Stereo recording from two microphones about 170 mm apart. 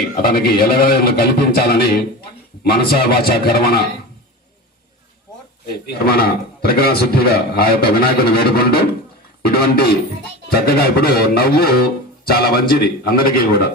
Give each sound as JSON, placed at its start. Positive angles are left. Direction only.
{"t": 0.2, "sound": "a man's voice", "side_deg": 60}
{"t": 2.9, "sound": "a man's voice", "side_deg": 65}
{"t": 5.6, "sound": "a man's voice", "side_deg": 65}